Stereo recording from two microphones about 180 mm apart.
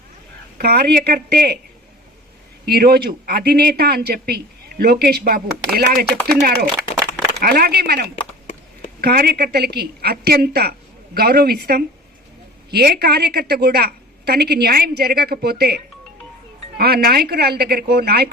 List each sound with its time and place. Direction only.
0.6 s a woman's voice: 60° right (ahead or behind)
2.6 s a woman's voice: 60° right (ahead or behind)